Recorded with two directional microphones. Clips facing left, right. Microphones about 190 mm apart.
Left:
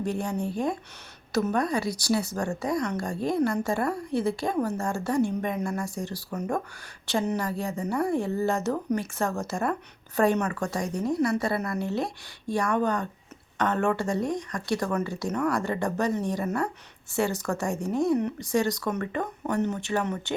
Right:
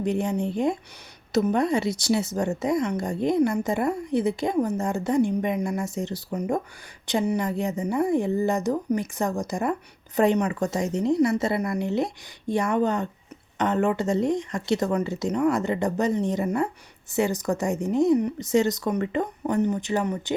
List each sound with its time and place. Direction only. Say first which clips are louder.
0.0 s a woman's voice: right 4 dB; 20° right (ahead or behind)